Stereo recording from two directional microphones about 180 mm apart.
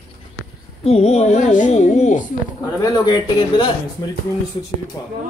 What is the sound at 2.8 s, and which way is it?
Speech, 20° left (ahead or behind).